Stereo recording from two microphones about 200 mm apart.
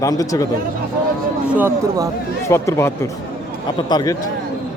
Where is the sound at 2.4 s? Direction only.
15° left (ahead or behind).